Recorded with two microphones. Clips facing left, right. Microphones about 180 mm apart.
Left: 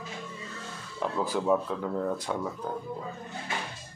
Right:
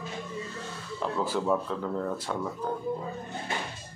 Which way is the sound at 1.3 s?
5° left (ahead or behind).